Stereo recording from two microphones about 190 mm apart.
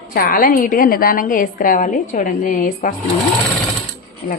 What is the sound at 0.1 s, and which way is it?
A woman's voice, 50° left (ahead or behind).